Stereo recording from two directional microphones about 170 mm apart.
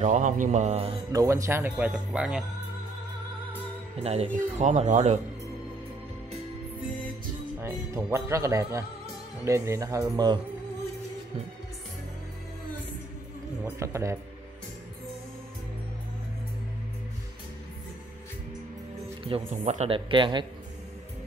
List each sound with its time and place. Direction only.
0.0 s speech: 45° right (ahead or behind)
1.1 s speech: 15° right (ahead or behind)
4.0 s speech: 40° right (ahead or behind)
7.6 s speech: 15° right (ahead or behind)
13.7 s speech: 15° right (ahead or behind)
19.2 s speech: 40° right (ahead or behind)